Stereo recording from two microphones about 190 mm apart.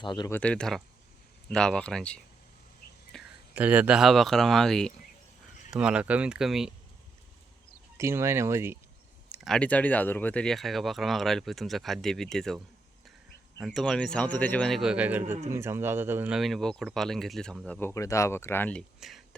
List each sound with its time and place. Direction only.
0.0 s speech: 25° left (ahead or behind)
0.3 s speech: 10° left (ahead or behind)
7.9 s speech: 15° right (ahead or behind)
9.3 s speech: centre (ahead or behind)